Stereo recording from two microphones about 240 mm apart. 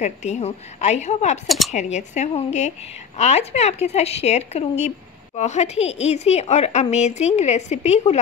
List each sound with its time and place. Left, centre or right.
0.0 s a woman's voice: left